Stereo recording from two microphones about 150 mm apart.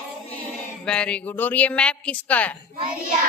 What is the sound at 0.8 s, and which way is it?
A woman's voice, 5° left (ahead or behind).